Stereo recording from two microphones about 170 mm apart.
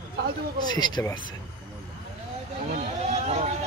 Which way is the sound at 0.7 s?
25° left (ahead or behind).